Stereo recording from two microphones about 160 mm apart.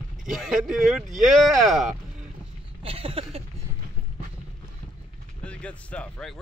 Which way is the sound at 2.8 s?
35° right (ahead or behind).